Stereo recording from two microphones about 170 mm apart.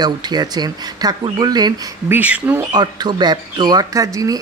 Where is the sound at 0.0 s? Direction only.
25° right (ahead or behind).